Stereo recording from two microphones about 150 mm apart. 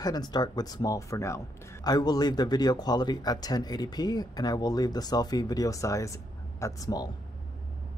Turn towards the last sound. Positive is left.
turn(degrees=25)  # may be behind; listen again after turning